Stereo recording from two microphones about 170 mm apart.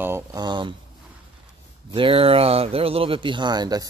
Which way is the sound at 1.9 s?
30° right (ahead or behind).